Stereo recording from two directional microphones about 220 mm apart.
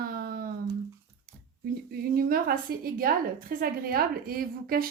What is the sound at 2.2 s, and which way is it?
Speech, 40° right (ahead or behind).